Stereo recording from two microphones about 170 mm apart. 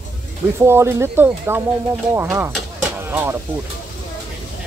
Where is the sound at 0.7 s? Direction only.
15° right (ahead or behind).